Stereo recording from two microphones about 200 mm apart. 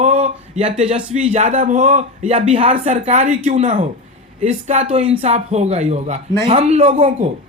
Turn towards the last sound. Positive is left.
turn(degrees=-30)  # may be behind; listen again after turning